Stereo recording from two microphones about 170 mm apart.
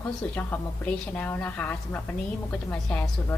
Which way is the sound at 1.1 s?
10° left (ahead or behind).